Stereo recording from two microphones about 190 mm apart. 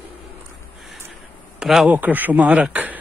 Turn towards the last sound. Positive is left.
turn(degrees=-10)  # may be behind; listen again after turning